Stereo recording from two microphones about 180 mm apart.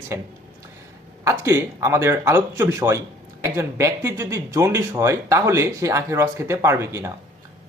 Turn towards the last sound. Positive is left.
turn(degrees=-15)  # may be behind; listen again after turning